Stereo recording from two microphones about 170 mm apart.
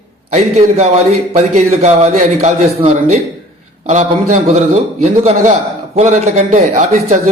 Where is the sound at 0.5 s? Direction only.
40° right (ahead or behind).